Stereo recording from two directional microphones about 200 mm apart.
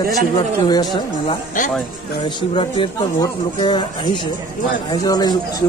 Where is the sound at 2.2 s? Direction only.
25° left (ahead or behind).